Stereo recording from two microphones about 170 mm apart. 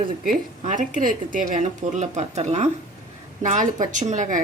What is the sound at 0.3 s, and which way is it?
Speech, 45° right (ahead or behind).